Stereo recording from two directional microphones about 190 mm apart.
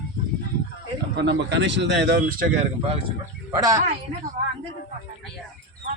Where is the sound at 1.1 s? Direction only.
65° right (ahead or behind).